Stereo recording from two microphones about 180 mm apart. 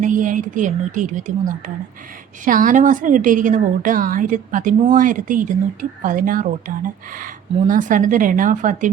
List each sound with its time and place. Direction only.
0.0 s a woman's voice: 45° right (ahead or behind)